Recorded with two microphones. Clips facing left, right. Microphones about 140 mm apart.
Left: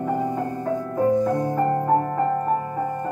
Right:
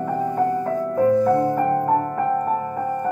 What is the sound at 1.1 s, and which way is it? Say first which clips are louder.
Music: right 4 dB; 15° left (ahead or behind).